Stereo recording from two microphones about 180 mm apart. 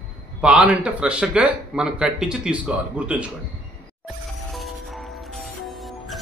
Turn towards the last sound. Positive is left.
turn(degrees=0)  # may be behind; listen again after turning